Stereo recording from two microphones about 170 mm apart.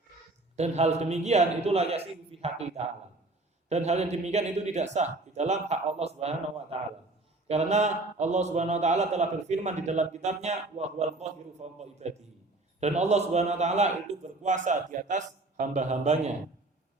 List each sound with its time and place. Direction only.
0.5 s a man's voice: 40° right (ahead or behind)